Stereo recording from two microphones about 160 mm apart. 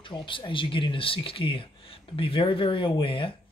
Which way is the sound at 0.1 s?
30° left (ahead or behind).